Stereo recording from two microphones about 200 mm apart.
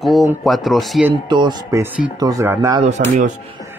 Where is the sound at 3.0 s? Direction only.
45° right (ahead or behind).